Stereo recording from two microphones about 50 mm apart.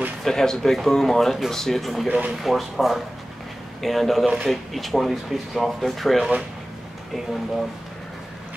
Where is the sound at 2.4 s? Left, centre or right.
Centre.